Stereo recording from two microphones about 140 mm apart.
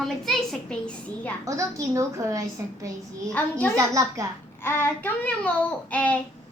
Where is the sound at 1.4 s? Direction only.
20° right (ahead or behind).